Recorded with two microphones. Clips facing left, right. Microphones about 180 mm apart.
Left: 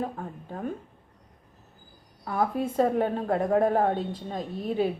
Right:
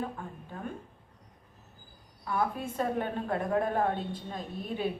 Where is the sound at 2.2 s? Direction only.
35° left (ahead or behind).